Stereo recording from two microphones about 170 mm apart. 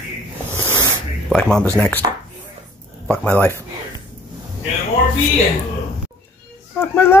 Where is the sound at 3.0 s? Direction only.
10° left (ahead or behind).